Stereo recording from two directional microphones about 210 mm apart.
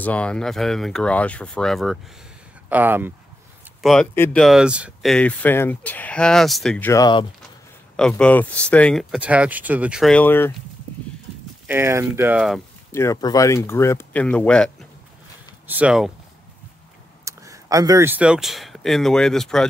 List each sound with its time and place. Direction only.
0.0 s speech: 5° left (ahead or behind)
3.8 s speech: 5° left (ahead or behind)
6.9 s speech: 20° left (ahead or behind)
7.9 s speech: 5° left (ahead or behind)
11.6 s speech: 10° right (ahead or behind)
12.9 s speech: 15° left (ahead or behind)
15.6 s speech: 5° right (ahead or behind)
17.2 s speech: 15° right (ahead or behind); by 19.6 s centre (ahead or behind)